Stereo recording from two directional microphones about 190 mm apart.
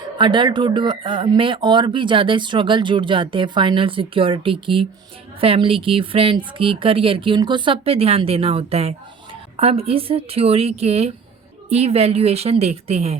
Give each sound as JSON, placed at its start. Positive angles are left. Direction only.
{"t": 0.2, "sound": "speech", "side_deg": -25}